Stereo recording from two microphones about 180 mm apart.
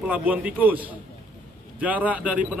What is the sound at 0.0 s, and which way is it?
A man's voice, 10° right (ahead or behind).